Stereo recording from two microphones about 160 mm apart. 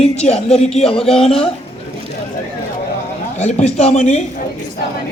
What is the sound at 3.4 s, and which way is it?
Speech, 45° left (ahead or behind).